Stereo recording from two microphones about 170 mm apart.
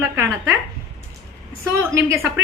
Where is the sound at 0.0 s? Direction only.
15° right (ahead or behind).